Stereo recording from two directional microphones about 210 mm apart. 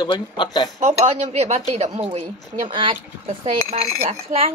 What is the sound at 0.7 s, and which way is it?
Speech, 30° right (ahead or behind).